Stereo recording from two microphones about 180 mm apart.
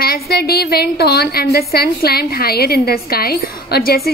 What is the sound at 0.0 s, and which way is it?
A woman's voice, 60° left (ahead or behind).